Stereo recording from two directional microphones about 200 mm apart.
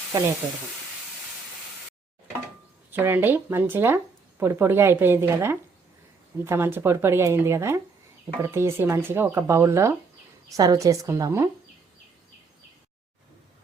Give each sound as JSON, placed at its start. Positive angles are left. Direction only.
{"t": 0.1, "sound": "speech", "side_deg": -15}
{"t": 2.9, "sound": "speech", "side_deg": -10}